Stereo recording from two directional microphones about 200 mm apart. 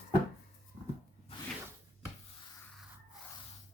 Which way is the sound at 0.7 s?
30° left (ahead or behind).